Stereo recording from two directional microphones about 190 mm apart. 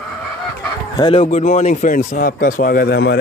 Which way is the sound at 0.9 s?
25° left (ahead or behind).